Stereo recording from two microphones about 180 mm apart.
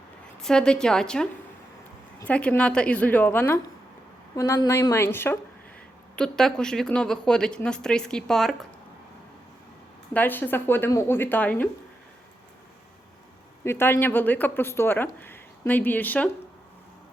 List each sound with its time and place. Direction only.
0.4 s a woman's voice: 5° left (ahead or behind)
10.2 s speech: 10° left (ahead or behind)
13.7 s speech: 15° left (ahead or behind)